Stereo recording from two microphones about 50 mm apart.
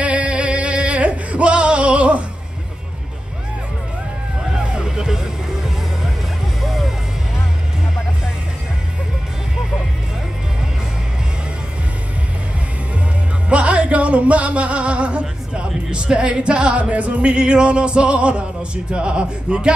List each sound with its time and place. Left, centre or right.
0.0 s music: right
4.7 s music: centre
6.6 s music: centre
13.5 s music: right